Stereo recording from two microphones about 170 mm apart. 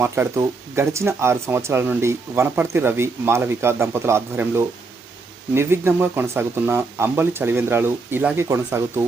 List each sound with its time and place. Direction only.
0.0 s speech: 15° right (ahead or behind)